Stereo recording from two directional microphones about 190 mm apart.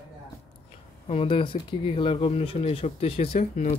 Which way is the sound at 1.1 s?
30° left (ahead or behind).